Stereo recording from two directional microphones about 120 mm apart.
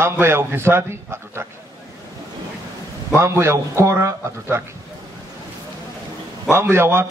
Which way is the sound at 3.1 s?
20° right (ahead or behind).